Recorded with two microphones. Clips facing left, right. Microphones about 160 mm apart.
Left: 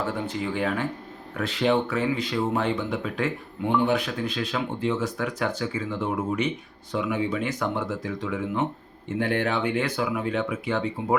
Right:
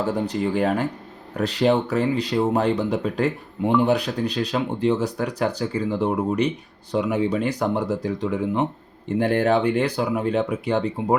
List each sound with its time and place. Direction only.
0.0 s speech: 40° right (ahead or behind)